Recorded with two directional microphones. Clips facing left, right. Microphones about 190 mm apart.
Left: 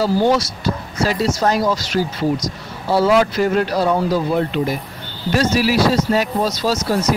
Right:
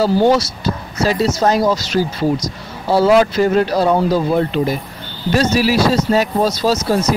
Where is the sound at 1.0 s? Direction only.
25° right (ahead or behind).